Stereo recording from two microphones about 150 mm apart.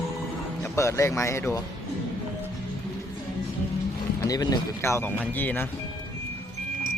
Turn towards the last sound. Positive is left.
turn(degrees=10)  # may be behind; listen again after turning